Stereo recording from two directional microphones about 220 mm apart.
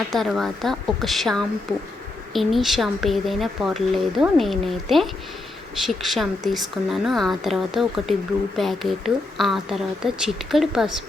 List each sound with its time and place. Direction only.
0.1 s speech: centre (ahead or behind)